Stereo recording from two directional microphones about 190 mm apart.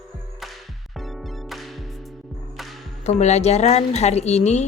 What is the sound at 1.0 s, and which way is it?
Music, centre (ahead or behind).